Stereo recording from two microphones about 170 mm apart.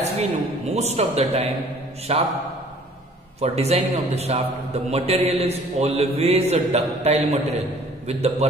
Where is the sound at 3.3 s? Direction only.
40° right (ahead or behind).